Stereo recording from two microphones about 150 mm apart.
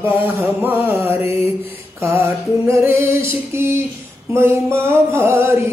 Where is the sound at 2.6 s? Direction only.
20° right (ahead or behind).